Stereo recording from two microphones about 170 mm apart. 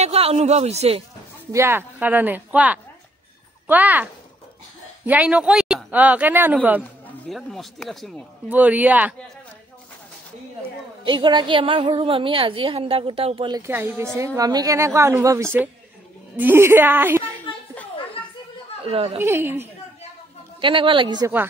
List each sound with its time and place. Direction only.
0.0 s speech: 35° right (ahead or behind)
1.5 s a woman's voice: 15° right (ahead or behind)
6.8 s a man's voice: centre (ahead or behind)
11.1 s a woman's voice: 25° right (ahead or behind)
13.6 s a woman's voice: 15° right (ahead or behind)
18.9 s a woman's voice: 35° right (ahead or behind)
19.1 s a woman's voice: 15° right (ahead or behind)
20.6 s a man's voice: 30° right (ahead or behind)